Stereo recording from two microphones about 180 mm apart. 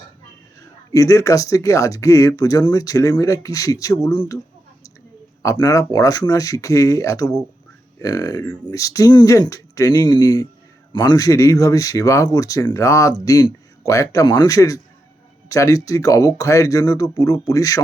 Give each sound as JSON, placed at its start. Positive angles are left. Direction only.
{"t": 0.9, "sound": "speech", "side_deg": 20}
{"t": 5.4, "sound": "speech", "side_deg": 20}